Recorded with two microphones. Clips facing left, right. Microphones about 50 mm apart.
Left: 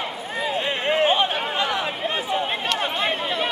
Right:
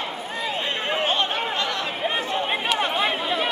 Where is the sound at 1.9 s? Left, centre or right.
Centre.